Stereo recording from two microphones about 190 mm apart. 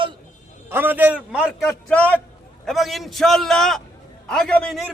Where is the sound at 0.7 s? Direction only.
10° right (ahead or behind).